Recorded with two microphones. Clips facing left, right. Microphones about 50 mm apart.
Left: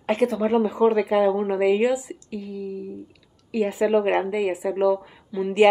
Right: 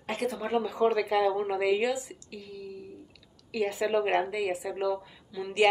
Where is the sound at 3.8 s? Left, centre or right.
Left.